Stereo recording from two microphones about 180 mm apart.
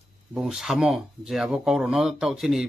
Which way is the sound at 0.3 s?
5° right (ahead or behind).